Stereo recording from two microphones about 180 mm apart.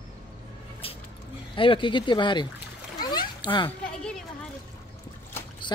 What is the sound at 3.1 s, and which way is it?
Splash, 25° left (ahead or behind).